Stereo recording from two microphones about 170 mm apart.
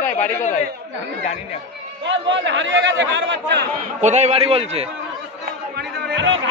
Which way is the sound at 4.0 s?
40° right (ahead or behind).